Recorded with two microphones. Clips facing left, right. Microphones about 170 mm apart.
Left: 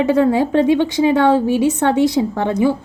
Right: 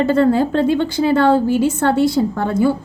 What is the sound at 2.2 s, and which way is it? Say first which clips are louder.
Speech: even; 20° left (ahead or behind).